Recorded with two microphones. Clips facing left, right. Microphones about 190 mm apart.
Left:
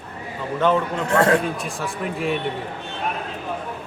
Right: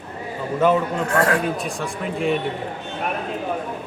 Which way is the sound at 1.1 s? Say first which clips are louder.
Left 3 dB; 25° left (ahead or behind).